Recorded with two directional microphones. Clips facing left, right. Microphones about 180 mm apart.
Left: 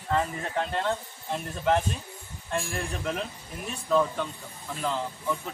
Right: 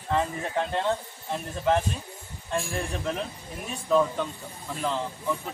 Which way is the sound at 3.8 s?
10° right (ahead or behind).